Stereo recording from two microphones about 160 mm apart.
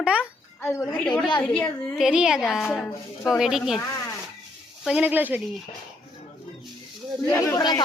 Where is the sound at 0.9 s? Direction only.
5° left (ahead or behind).